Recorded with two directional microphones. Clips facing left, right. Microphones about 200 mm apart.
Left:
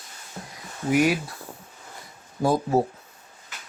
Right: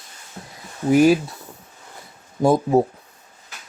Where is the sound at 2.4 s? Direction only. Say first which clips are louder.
Right 5 dB; 20° right (ahead or behind).